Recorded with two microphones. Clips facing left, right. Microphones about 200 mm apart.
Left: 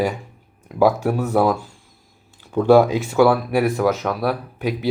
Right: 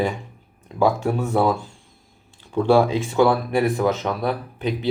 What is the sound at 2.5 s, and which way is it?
Speech, 5° left (ahead or behind).